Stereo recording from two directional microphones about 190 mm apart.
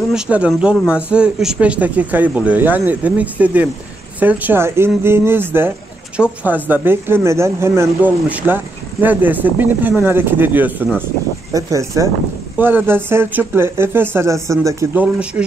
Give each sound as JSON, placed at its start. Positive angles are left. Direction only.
{"t": 0.1, "sound": "speech", "side_deg": -5}